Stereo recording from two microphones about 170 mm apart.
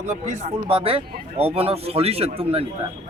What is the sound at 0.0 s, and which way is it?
Speech, 45° right (ahead or behind).